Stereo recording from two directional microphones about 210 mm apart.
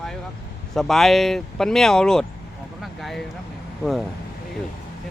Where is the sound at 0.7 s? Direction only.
Centre (ahead or behind).